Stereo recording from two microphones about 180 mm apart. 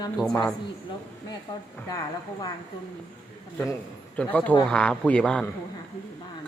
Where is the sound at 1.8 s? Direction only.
20° left (ahead or behind).